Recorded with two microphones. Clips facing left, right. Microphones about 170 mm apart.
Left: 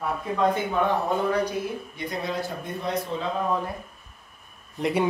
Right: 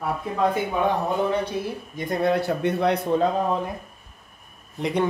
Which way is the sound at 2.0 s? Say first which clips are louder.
Right 10 dB; 55° right (ahead or behind).